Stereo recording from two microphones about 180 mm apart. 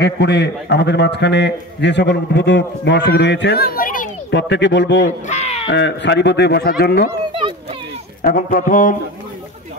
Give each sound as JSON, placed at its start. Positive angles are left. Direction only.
{"t": 0.0, "sound": "a man's voice", "side_deg": 70}
{"t": 4.3, "sound": "a man's voice", "side_deg": 75}
{"t": 5.3, "sound": "a sound", "side_deg": 35}
{"t": 5.7, "sound": "a man's voice", "side_deg": 75}
{"t": 7.1, "sound": "a sound", "side_deg": -30}
{"t": 8.2, "sound": "a man's voice", "side_deg": 50}